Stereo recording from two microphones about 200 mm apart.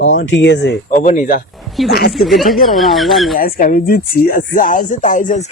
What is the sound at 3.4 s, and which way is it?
A man's voice, 45° left (ahead or behind).